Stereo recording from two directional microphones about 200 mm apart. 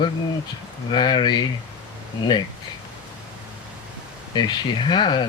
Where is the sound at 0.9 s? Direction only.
25° left (ahead or behind).